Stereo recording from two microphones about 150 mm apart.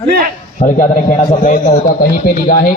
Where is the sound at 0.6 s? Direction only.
55° left (ahead or behind).